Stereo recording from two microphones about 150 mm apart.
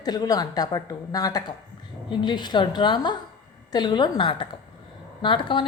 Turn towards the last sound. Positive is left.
turn(degrees=35)  # may be behind; listen again after turning